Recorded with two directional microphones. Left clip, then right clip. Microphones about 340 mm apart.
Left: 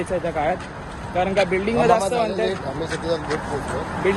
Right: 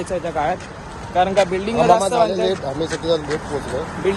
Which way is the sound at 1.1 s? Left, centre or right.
Centre.